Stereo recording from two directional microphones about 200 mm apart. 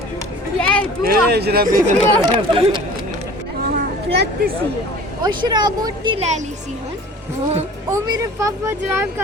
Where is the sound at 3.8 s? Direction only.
45° right (ahead or behind).